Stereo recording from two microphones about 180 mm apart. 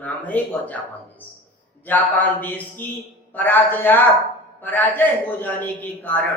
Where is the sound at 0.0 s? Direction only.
10° left (ahead or behind).